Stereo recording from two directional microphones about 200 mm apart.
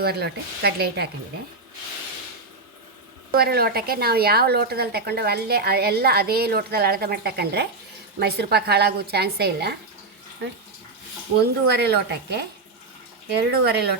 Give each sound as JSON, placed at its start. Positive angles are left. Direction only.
{"t": 0.0, "sound": "speech", "side_deg": -50}
{"t": 3.3, "sound": "speech", "side_deg": -50}
{"t": 11.3, "sound": "speech", "side_deg": -55}